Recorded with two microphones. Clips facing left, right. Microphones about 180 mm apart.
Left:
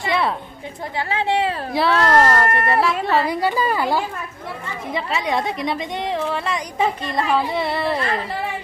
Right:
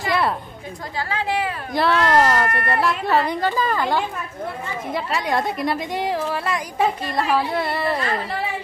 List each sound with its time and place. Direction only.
0.0 s a sound: centre (ahead or behind)
0.9 s a woman's voice: 25° left (ahead or behind)
1.7 s a woman's voice: centre (ahead or behind)